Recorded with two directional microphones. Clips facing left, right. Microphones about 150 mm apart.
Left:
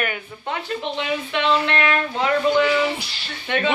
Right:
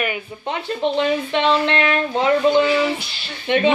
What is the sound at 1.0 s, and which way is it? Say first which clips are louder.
A woman's voice: right 4 dB; 30° right (ahead or behind).